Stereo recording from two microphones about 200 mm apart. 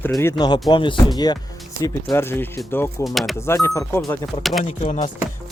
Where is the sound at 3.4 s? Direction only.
15° left (ahead or behind).